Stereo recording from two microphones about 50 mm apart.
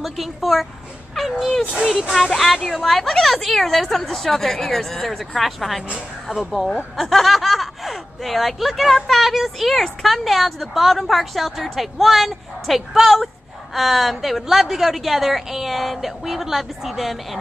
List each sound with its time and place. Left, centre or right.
0.0 s speech: centre